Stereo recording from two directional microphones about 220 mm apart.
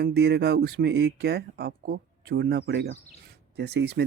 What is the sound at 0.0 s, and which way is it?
Speech, 50° right (ahead or behind).